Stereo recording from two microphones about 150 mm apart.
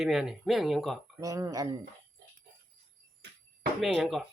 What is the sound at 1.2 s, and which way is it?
Speech, 20° right (ahead or behind).